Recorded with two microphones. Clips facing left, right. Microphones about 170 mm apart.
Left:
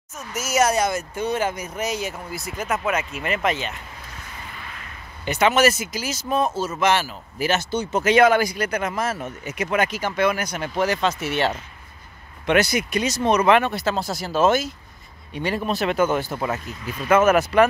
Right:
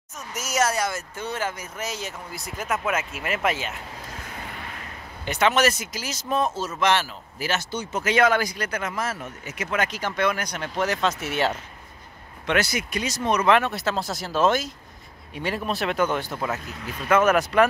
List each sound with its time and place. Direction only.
0.2 s speech: 5° left (ahead or behind)
0.7 s speech: 20° left (ahead or behind); by 3.7 s 5° right (ahead or behind)
5.2 s speech: centre (ahead or behind)
7.3 s speech: 20° left (ahead or behind); by 11.5 s centre (ahead or behind)
12.4 s speech: 15° left (ahead or behind)
13.5 s speech: centre (ahead or behind)